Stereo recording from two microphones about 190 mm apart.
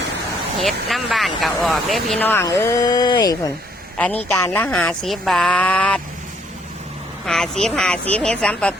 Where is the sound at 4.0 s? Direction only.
10° left (ahead or behind).